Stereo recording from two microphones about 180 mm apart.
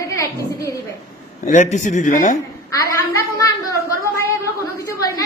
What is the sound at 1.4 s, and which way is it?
Speech, 40° left (ahead or behind).